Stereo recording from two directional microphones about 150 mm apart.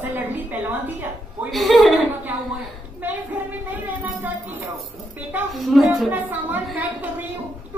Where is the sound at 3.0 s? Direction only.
10° right (ahead or behind).